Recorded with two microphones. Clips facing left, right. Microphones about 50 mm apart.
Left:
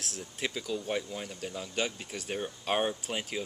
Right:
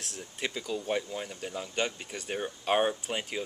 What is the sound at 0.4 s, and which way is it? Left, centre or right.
Speech, centre.